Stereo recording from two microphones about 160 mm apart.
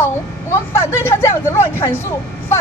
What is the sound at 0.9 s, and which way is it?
A woman's voice, 15° left (ahead or behind).